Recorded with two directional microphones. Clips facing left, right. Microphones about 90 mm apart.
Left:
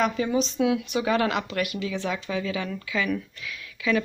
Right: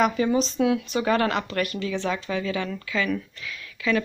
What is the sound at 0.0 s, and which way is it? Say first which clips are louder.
Speech: right 2 dB; centre (ahead or behind).